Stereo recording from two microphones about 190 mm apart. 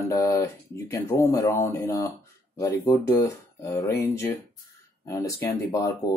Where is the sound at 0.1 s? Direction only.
15° left (ahead or behind).